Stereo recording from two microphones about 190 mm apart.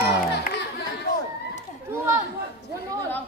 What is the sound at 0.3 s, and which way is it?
Music, 60° left (ahead or behind).